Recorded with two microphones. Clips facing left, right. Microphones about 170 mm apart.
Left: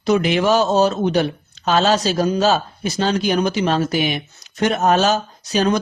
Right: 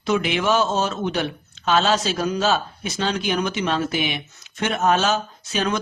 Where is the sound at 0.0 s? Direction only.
40° left (ahead or behind).